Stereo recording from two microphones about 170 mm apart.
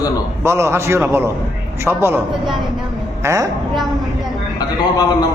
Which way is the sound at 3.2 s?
15° right (ahead or behind).